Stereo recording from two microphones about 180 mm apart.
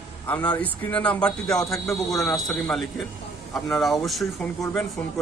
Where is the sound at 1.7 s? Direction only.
15° left (ahead or behind).